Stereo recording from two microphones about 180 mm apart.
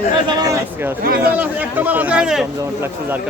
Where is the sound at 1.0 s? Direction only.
55° right (ahead or behind).